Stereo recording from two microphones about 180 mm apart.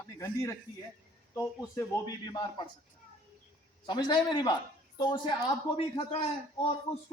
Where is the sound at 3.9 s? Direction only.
25° left (ahead or behind).